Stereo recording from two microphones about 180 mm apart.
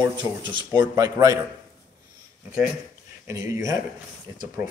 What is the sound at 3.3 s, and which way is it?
Speech, 15° right (ahead or behind).